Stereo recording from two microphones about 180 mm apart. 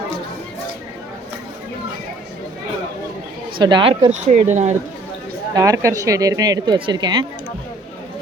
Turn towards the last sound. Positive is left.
turn(degrees=-25)  # may be behind; listen again after turning